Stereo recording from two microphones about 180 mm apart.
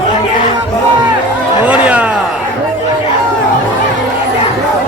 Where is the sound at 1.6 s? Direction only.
5° right (ahead or behind).